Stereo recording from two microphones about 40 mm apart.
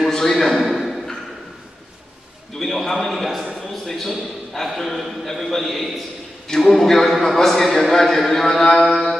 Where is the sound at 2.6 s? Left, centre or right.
Centre.